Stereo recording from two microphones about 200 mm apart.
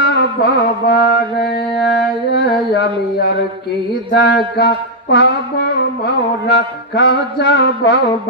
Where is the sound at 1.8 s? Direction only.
55° left (ahead or behind).